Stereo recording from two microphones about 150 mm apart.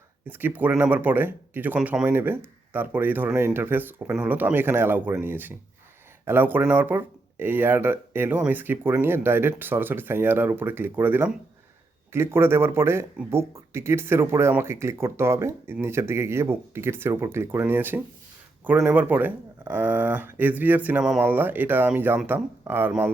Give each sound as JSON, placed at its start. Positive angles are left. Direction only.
{"t": 0.3, "sound": "speech", "side_deg": -15}